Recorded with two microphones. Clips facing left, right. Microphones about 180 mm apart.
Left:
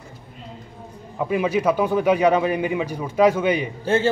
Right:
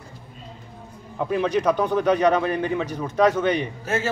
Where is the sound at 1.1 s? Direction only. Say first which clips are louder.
Left 1 dB; 5° left (ahead or behind).